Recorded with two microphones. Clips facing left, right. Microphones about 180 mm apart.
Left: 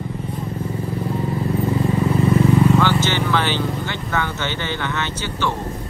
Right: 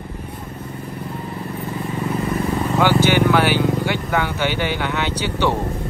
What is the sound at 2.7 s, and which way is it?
Vehicle, 10° right (ahead or behind).